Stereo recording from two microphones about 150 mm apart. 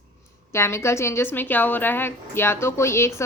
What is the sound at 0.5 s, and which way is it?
A woman's voice, 20° left (ahead or behind).